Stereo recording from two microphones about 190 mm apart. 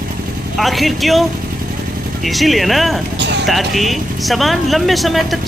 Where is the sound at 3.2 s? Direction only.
65° right (ahead or behind).